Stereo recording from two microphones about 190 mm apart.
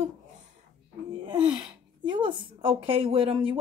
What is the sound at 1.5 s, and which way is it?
A woman's voice, 25° right (ahead or behind).